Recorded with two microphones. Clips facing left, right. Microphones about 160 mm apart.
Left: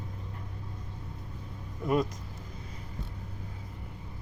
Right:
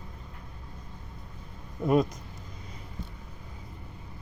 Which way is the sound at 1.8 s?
25° right (ahead or behind).